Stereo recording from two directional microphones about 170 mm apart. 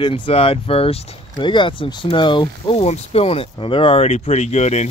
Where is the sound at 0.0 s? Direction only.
30° left (ahead or behind).